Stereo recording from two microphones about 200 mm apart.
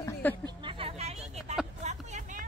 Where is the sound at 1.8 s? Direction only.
35° right (ahead or behind).